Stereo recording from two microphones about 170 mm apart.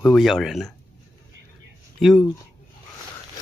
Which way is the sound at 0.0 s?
Centre (ahead or behind).